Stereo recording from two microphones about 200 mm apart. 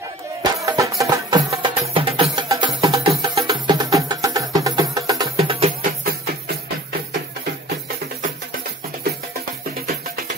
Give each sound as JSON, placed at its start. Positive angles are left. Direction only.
{"t": 0.4, "sound": "music", "side_deg": -15}
{"t": 5.4, "sound": "music", "side_deg": -30}
{"t": 5.8, "sound": "music", "side_deg": -45}